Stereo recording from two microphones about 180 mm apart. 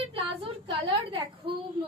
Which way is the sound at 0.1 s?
30° right (ahead or behind).